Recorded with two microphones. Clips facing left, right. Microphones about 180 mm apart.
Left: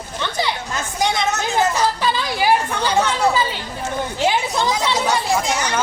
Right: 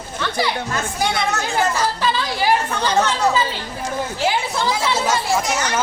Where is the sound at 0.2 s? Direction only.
20° left (ahead or behind).